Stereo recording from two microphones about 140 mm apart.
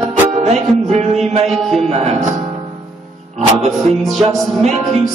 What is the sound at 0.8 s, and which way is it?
Speech, 55° right (ahead or behind).